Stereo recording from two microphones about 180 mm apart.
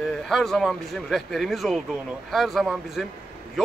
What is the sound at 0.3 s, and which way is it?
A man's voice, centre (ahead or behind).